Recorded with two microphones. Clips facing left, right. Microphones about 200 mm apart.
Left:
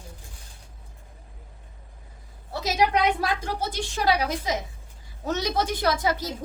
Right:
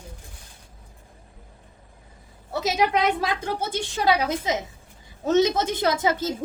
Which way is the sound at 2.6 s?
20° right (ahead or behind).